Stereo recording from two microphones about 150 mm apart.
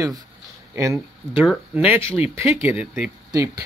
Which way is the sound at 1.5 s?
5° right (ahead or behind).